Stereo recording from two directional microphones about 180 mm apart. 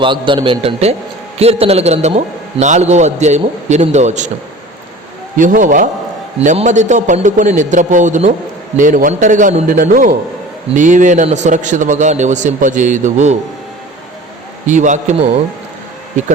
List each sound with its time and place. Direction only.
0.0 s a man's voice: 25° right (ahead or behind)
5.4 s a man's voice: 45° right (ahead or behind)
14.7 s a man's voice: 40° right (ahead or behind)